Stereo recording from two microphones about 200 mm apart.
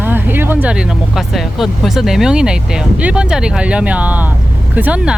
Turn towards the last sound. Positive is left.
turn(degrees=-5)  # may be behind; listen again after turning